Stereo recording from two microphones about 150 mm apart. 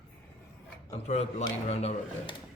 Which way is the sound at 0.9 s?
45° left (ahead or behind).